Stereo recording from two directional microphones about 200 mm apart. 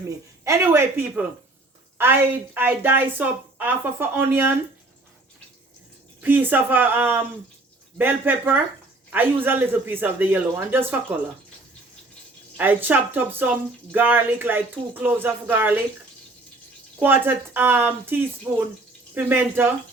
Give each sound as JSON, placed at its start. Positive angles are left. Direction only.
{"t": 0.4, "sound": "speech", "side_deg": -15}
{"t": 6.2, "sound": "speech", "side_deg": -10}
{"t": 12.5, "sound": "speech", "side_deg": -10}
{"t": 17.0, "sound": "speech", "side_deg": -10}